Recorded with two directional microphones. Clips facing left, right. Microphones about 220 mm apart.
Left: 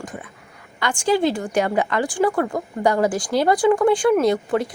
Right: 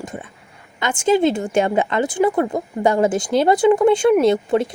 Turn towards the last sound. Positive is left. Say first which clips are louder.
# right 3 dB
turn(degrees=-25)  # may be behind; listen again after turning